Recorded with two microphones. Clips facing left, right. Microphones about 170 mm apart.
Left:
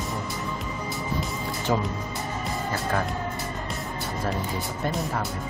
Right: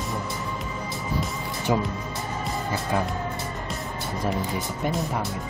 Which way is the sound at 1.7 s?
10° right (ahead or behind).